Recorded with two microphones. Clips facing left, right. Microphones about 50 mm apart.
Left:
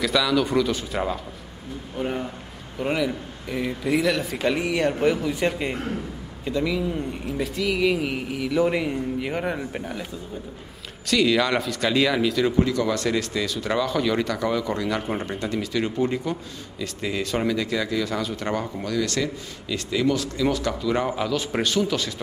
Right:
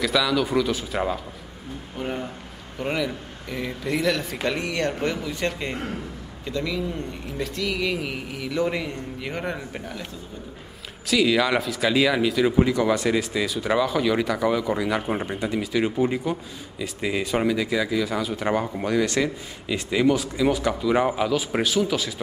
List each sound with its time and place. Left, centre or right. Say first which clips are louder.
0.0 s speech: left 1 dB; centre
11.1 s speech: even; centre